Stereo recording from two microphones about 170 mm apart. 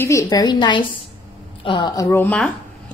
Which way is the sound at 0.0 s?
20° left (ahead or behind).